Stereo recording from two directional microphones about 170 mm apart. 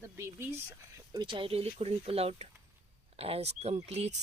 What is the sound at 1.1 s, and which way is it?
Speech, 25° right (ahead or behind).